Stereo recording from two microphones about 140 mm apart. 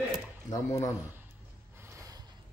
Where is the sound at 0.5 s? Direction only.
25° left (ahead or behind).